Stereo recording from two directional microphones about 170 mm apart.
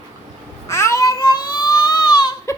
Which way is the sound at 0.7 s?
15° left (ahead or behind).